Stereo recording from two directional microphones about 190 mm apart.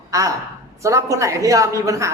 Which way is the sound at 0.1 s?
15° right (ahead or behind).